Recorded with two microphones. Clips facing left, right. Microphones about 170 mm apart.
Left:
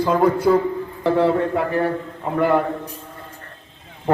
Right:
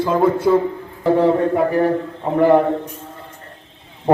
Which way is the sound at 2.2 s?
25° right (ahead or behind).